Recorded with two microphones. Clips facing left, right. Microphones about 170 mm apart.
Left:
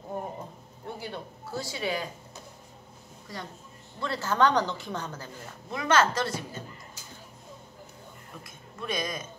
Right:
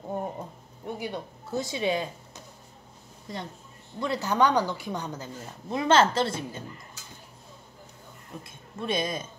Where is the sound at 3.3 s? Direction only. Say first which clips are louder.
Right 3 dB; 20° right (ahead or behind).